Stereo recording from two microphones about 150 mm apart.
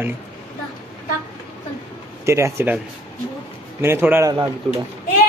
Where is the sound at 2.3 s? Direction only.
20° right (ahead or behind).